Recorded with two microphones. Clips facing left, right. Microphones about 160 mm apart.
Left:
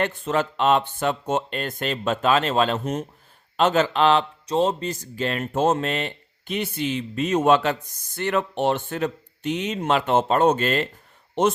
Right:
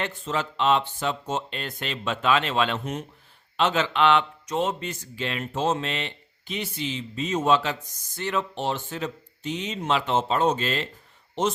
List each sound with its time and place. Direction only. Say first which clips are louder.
0.0 s speech: left 5 dB; 55° left (ahead or behind)